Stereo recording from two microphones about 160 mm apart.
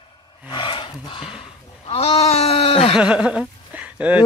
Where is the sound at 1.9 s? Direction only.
40° left (ahead or behind).